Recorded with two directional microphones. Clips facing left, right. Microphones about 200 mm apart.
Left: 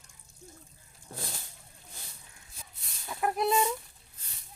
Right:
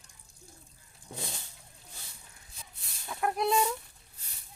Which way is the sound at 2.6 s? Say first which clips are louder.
Even; centre (ahead or behind).